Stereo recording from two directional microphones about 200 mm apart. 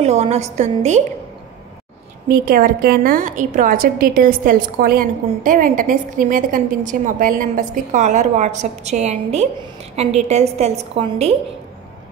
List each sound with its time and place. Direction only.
0.0 s a woman's voice: 35° right (ahead or behind)
2.2 s a woman's voice: 45° right (ahead or behind)